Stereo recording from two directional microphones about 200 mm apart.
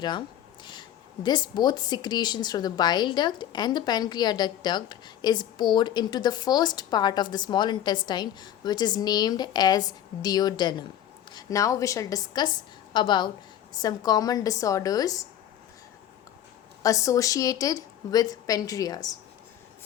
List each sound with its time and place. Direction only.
0.0 s a woman's voice: 20° left (ahead or behind)
16.8 s a woman's voice: 15° left (ahead or behind)